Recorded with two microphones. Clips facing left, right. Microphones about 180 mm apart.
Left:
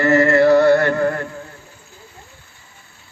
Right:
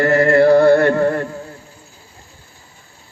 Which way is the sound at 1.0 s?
30° right (ahead or behind).